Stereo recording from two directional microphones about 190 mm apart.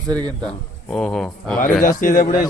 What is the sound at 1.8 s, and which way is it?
Speech, 45° left (ahead or behind).